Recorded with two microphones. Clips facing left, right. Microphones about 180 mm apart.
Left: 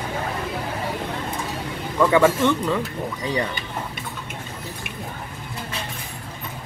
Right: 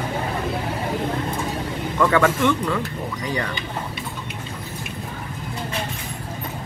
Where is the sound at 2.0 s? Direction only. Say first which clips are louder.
Left 2 dB; 15° left (ahead or behind).